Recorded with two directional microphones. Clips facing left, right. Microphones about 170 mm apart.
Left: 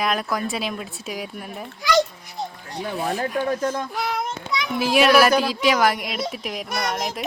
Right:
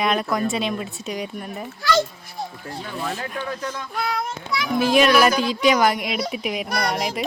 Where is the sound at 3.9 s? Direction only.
5° left (ahead or behind).